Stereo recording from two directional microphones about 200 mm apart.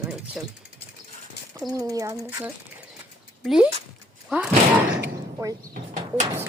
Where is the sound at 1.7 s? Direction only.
15° right (ahead or behind).